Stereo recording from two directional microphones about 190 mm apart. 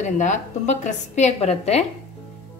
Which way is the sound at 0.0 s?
40° left (ahead or behind).